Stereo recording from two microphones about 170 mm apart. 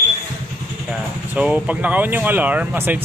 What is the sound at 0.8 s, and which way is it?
Speech, 5° right (ahead or behind).